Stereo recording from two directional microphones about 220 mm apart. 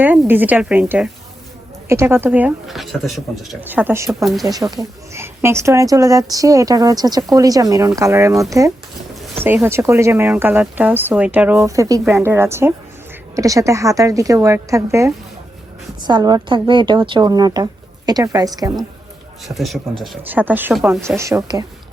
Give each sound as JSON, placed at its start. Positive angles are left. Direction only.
{"t": 0.0, "sound": "speech", "side_deg": -10}
{"t": 19.5, "sound": "a man's voice", "side_deg": 0}